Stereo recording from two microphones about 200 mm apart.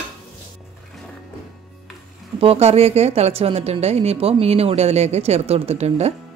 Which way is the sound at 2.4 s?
30° right (ahead or behind).